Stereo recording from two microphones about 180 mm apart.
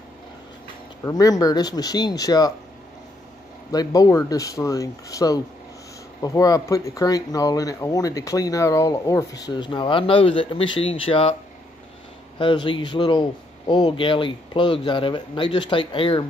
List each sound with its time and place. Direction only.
1.0 s speech: 20° left (ahead or behind)
3.7 s speech: 20° left (ahead or behind)
12.4 s speech: 25° left (ahead or behind)